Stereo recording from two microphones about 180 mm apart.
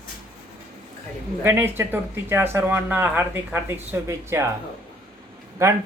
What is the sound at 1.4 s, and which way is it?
Speech, 10° right (ahead or behind).